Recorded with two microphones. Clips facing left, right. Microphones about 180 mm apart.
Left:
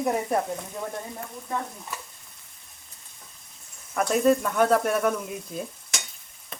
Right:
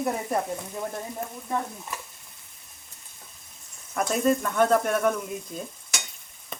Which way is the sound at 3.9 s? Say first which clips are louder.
Left 2 dB; centre (ahead or behind).